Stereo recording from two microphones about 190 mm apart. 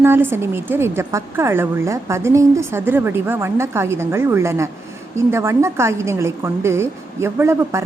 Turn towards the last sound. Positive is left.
turn(degrees=-15)  # may be behind; listen again after turning